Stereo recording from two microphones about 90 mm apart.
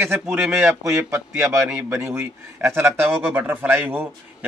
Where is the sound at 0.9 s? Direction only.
40° right (ahead or behind).